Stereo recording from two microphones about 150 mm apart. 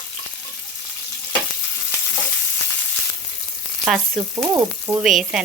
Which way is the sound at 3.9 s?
Centre (ahead or behind).